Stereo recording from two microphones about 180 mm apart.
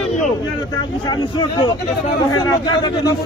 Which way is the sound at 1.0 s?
25° left (ahead or behind).